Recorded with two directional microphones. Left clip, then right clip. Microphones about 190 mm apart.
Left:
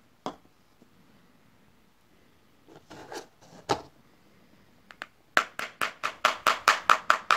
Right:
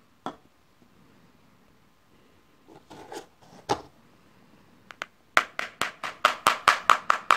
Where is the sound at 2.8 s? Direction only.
Centre (ahead or behind).